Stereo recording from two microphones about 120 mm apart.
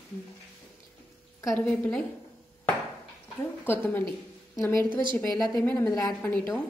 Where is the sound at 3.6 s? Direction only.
15° left (ahead or behind).